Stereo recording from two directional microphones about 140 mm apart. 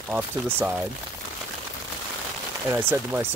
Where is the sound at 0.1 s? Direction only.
15° right (ahead or behind).